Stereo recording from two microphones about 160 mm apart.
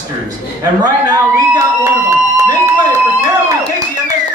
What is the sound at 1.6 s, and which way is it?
Speech, 20° right (ahead or behind).